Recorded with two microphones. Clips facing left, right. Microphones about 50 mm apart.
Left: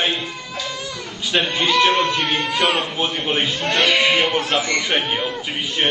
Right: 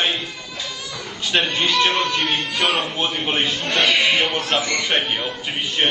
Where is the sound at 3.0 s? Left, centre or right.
Centre.